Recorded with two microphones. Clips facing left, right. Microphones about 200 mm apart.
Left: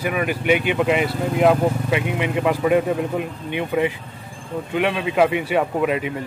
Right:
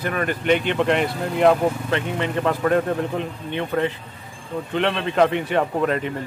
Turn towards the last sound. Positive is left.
turn(degrees=10)  # may be behind; listen again after turning